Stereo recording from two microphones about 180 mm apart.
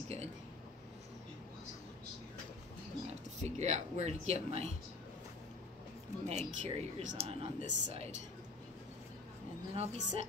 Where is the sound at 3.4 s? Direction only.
40° right (ahead or behind).